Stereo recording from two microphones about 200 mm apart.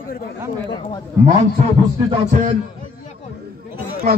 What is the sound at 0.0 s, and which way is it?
Speech, 45° left (ahead or behind).